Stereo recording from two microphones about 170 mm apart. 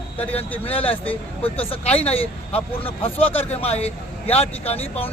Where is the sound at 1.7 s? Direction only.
35° left (ahead or behind).